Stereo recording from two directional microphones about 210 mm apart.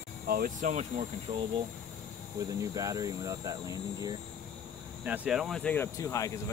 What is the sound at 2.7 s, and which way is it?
Speech, 15° right (ahead or behind).